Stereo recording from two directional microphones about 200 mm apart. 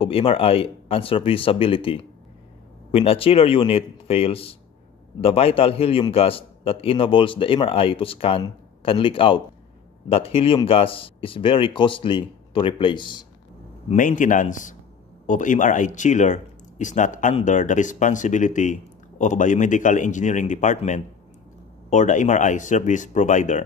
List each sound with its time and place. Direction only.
0.0 s a man's voice: 30° left (ahead or behind)
13.8 s speech: 40° left (ahead or behind)